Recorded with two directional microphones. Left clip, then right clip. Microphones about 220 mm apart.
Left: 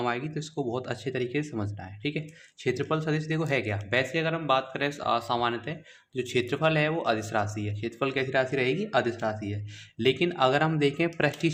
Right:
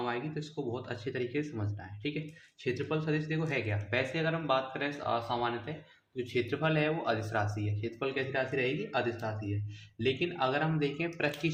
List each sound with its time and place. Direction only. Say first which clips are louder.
0.0 s speech: left 5 dB; 40° left (ahead or behind)